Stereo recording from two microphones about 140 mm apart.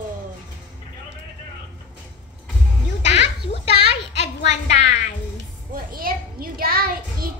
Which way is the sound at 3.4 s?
45° left (ahead or behind).